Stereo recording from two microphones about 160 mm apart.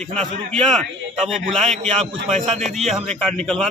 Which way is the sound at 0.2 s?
5° left (ahead or behind).